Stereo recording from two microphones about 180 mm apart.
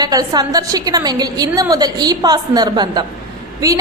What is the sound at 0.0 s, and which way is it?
A woman's voice, 20° right (ahead or behind).